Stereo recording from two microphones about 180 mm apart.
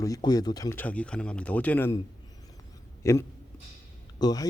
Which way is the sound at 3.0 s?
15° left (ahead or behind).